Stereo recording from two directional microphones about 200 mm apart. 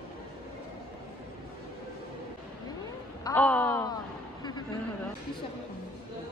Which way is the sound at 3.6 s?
20° left (ahead or behind).